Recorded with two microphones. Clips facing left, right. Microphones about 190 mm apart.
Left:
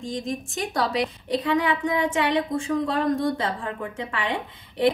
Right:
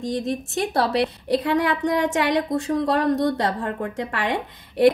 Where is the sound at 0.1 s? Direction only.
70° right (ahead or behind).